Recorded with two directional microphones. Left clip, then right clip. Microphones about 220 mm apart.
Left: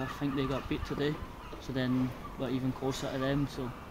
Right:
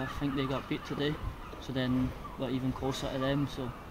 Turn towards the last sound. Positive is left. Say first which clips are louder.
# right 1 dB
turn(degrees=0)  # may be behind; listen again after turning